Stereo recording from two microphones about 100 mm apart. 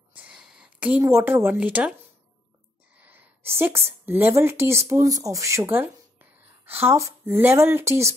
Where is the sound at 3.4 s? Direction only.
25° right (ahead or behind).